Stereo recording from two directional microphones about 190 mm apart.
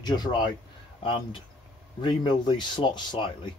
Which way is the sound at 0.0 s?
20° left (ahead or behind).